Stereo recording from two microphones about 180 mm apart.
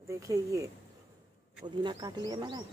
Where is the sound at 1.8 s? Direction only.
25° right (ahead or behind).